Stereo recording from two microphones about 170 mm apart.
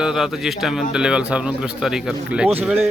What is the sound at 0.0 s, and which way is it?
A man's voice, centre (ahead or behind).